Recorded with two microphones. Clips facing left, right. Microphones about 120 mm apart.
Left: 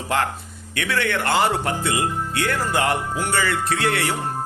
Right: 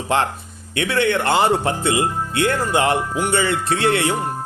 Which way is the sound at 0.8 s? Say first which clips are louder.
Right 4 dB; 25° right (ahead or behind).